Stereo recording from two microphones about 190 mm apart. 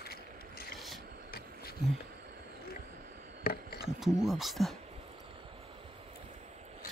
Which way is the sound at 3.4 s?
55° left (ahead or behind).